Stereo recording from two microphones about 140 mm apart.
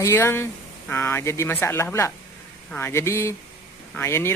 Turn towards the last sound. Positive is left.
turn(degrees=20)  # may be behind; listen again after turning